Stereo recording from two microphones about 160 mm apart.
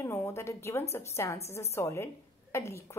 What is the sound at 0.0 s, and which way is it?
A woman's voice, 15° left (ahead or behind).